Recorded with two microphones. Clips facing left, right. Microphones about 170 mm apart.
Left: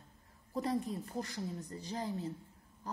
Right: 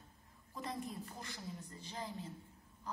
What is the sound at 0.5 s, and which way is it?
A woman's voice, 35° left (ahead or behind).